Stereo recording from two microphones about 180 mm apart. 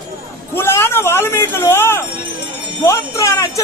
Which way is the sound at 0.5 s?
15° left (ahead or behind).